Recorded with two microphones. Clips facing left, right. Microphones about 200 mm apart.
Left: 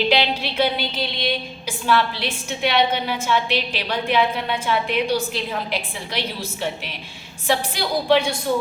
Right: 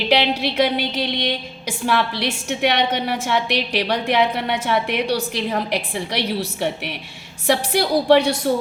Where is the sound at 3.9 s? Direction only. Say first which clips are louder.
Even; 70° right (ahead or behind).